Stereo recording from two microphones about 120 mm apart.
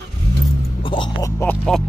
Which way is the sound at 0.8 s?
45° left (ahead or behind).